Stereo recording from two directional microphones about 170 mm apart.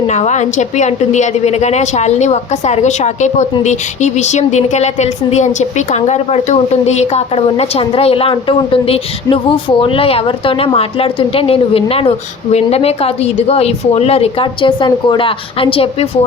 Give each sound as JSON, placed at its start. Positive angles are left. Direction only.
{"t": 0.1, "sound": "a woman's voice", "side_deg": 45}